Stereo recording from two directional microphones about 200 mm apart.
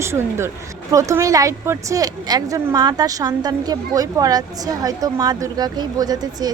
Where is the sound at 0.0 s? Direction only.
15° right (ahead or behind).